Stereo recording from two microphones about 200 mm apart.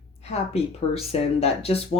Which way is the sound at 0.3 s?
30° left (ahead or behind).